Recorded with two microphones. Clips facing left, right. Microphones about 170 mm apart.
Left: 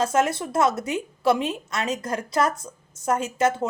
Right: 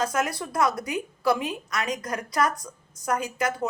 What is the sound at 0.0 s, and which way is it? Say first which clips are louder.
A woman's voice: left 5 dB; 25° left (ahead or behind).